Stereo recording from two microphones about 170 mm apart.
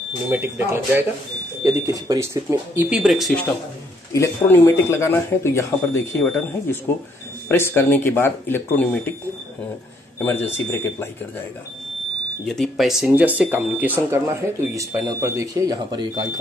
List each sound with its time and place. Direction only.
0.3 s speech: 15° right (ahead or behind)
4.1 s speech: 15° left (ahead or behind)
10.1 s speech: 10° left (ahead or behind)
12.4 s speech: centre (ahead or behind); by 16.3 s 25° right (ahead or behind)